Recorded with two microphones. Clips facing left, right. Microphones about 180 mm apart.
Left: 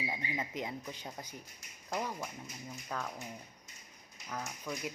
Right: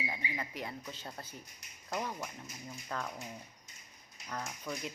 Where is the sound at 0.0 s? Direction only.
20° left (ahead or behind).